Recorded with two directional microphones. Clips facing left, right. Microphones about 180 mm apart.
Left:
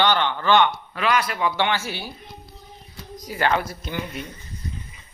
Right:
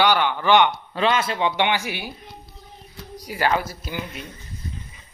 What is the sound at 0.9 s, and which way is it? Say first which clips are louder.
A man's voice: right 1 dB; 25° right (ahead or behind).